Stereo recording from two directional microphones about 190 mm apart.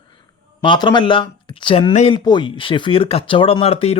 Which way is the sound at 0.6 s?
25° left (ahead or behind).